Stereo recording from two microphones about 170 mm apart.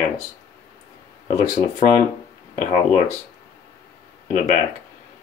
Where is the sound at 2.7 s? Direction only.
45° left (ahead or behind).